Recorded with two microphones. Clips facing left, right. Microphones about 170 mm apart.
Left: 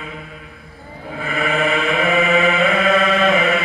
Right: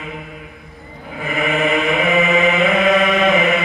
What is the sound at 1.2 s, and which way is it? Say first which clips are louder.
Chant: right 1 dB; 20° right (ahead or behind).